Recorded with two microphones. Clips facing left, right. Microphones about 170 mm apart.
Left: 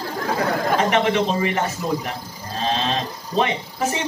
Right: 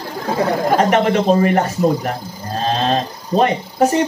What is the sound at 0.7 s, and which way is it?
Speech, 45° right (ahead or behind).